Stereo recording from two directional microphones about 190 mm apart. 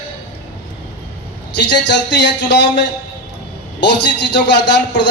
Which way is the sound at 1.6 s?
65° left (ahead or behind).